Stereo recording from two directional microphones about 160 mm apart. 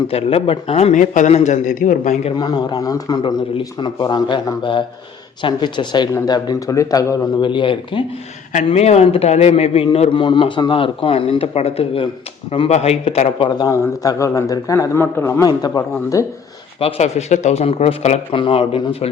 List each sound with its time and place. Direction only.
0.1 s a man's voice: 35° left (ahead or behind)
2.3 s a man's voice: 25° left (ahead or behind)
8.5 s a man's voice: 40° left (ahead or behind)
13.6 s a man's voice: 20° left (ahead or behind)
16.8 s a man's voice: 45° left (ahead or behind)